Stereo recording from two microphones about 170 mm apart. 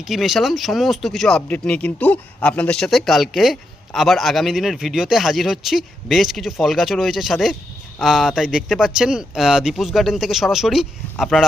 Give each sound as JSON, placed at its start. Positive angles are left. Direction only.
{"t": 0.0, "sound": "speech", "side_deg": 0}